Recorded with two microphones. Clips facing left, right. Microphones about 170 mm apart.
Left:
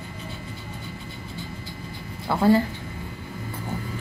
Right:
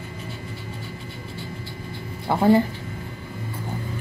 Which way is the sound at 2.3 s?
20° right (ahead or behind).